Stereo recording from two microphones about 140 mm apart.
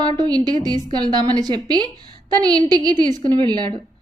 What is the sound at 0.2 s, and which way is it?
A woman's voice, 30° right (ahead or behind).